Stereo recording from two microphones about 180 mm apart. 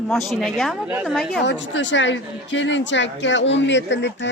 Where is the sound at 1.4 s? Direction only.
90° left.